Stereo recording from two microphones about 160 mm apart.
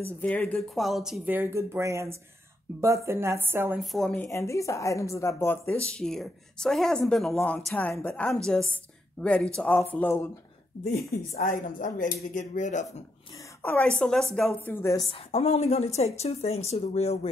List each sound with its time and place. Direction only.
0.0 s a woman's voice: 10° left (ahead or behind); by 3.8 s 15° right (ahead or behind)
3.8 s speech: centre (ahead or behind)
5.9 s speech: 5° left (ahead or behind)
10.8 s speech: 50° left (ahead or behind)
13.6 s speech: 10° left (ahead or behind)
15.0 s a woman's voice: 40° left (ahead or behind)